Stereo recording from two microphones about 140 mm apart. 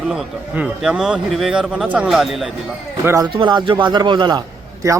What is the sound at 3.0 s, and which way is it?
Speech, 20° right (ahead or behind).